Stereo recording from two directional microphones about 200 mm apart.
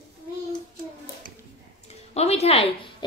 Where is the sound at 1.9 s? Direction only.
30° left (ahead or behind).